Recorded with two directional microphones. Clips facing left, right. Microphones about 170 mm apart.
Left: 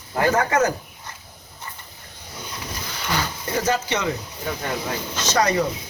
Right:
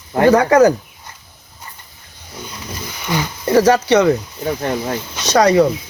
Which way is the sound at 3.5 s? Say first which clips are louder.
Right 11 dB; 75° right (ahead or behind).